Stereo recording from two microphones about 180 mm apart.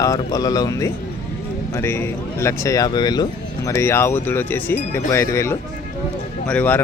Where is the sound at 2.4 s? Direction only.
15° left (ahead or behind).